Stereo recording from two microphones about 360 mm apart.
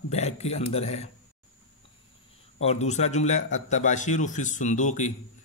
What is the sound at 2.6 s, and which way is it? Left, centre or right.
A man's voice, centre.